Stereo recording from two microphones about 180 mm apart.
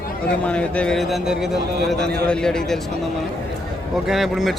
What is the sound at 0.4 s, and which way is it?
Speech, 5° left (ahead or behind).